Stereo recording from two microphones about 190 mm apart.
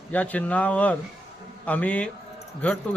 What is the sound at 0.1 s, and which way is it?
A man's voice, 10° left (ahead or behind).